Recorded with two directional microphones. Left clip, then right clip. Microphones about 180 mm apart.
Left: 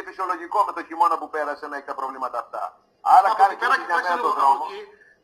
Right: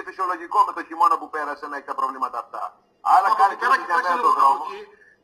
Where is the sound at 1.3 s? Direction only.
30° right (ahead or behind).